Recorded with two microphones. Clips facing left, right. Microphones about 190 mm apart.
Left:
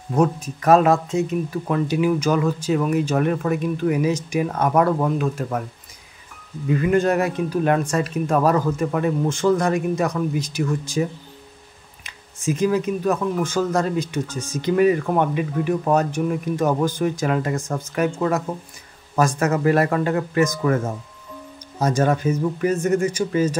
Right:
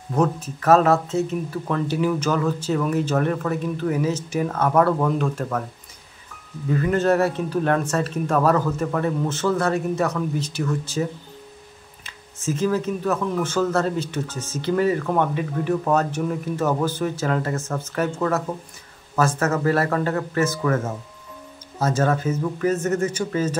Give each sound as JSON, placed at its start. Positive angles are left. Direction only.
{"t": 0.1, "sound": "speech", "side_deg": 10}
{"t": 6.8, "sound": "speech", "side_deg": 15}
{"t": 21.7, "sound": "speech", "side_deg": 15}